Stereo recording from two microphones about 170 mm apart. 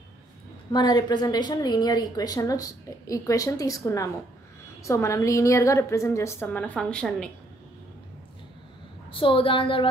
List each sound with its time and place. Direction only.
0.7 s a woman's voice: 25° left (ahead or behind); by 7.2 s 5° left (ahead or behind)
9.1 s a woman's voice: 30° left (ahead or behind)